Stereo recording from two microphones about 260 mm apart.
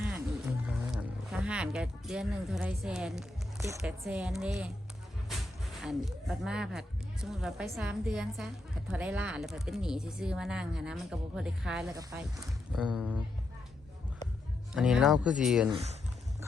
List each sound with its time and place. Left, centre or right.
0.0 s music: centre
3.8 s speech: centre
5.8 s speech: centre
14.7 s speech: centre
15.7 s speech: right